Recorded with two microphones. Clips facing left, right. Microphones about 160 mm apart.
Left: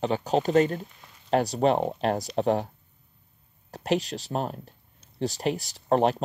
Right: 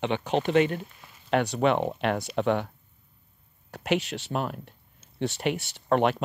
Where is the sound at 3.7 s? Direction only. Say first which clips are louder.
Left 1 dB; 35° left (ahead or behind).